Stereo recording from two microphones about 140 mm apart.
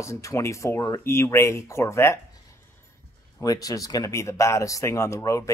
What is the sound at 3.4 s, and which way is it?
Speech, 25° left (ahead or behind).